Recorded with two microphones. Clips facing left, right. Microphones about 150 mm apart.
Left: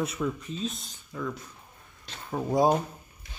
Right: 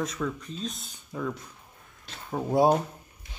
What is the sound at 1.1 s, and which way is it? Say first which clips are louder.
Speech: right 2 dB; 20° right (ahead or behind).